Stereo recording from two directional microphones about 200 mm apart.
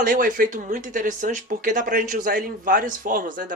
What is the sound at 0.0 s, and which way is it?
Speech, 45° right (ahead or behind).